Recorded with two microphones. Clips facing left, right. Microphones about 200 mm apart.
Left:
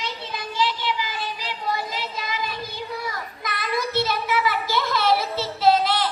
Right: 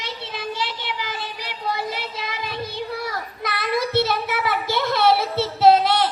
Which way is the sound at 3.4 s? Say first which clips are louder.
Right 4 dB; 65° right (ahead or behind).